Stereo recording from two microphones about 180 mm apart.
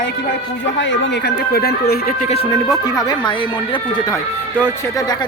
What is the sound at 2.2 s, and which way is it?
Speech, 35° left (ahead or behind).